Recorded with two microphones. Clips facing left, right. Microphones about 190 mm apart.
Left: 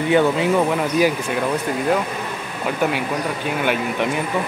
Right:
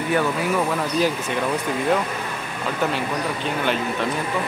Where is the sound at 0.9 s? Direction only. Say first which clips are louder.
Left 3 dB; 10° left (ahead or behind).